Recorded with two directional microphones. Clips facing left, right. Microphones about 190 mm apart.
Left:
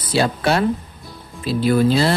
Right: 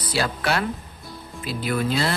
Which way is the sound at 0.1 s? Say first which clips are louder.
Left 6 dB; 25° left (ahead or behind).